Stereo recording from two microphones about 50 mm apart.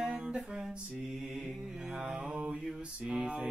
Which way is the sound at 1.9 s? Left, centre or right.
Centre.